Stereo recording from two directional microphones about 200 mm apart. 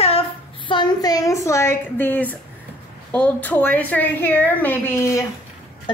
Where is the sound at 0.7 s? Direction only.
20° left (ahead or behind).